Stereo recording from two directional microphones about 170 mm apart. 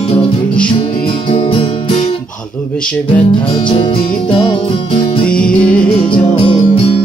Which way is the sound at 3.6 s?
30° left (ahead or behind).